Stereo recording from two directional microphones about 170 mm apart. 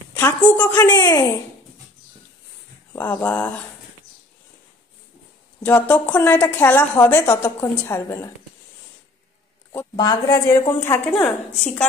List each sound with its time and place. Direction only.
0.2 s a woman's voice: 10° left (ahead or behind)
2.9 s speech: 10° left (ahead or behind)
5.6 s a woman's voice: 10° left (ahead or behind)
9.7 s a woman's voice: 20° left (ahead or behind)